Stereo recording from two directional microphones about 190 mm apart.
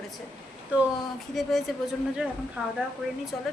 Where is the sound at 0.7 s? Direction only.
10° right (ahead or behind).